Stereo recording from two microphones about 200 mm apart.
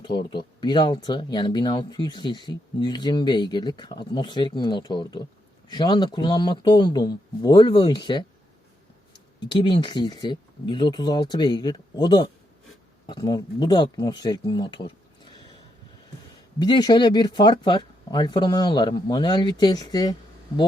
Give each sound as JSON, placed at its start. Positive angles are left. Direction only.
{"t": 0.0, "sound": "speech", "side_deg": 25}
{"t": 9.5, "sound": "speech", "side_deg": 25}
{"t": 16.6, "sound": "speech", "side_deg": 20}